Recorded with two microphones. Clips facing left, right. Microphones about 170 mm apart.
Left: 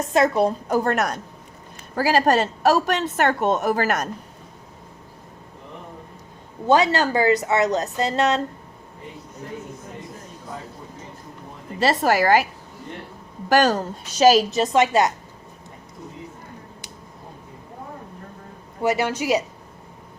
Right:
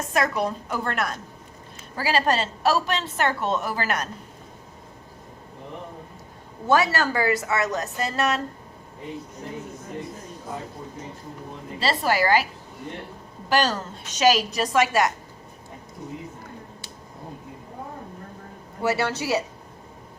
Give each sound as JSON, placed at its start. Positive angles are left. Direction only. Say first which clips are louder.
{"t": 0.0, "sound": "a woman's voice", "louder": "left 6 dB", "side_deg": 25}
{"t": 6.7, "sound": "a woman's voice", "louder": "left 3 dB", "side_deg": 20}
{"t": 11.8, "sound": "a woman's voice", "louder": "left 4 dB", "side_deg": 45}
{"t": 13.5, "sound": "a woman's voice", "louder": "left 5 dB", "side_deg": 45}
{"t": 14.2, "sound": "a woman's voice", "louder": "left 5 dB", "side_deg": 30}
{"t": 18.8, "sound": "speech", "louder": "left 3 dB", "side_deg": 15}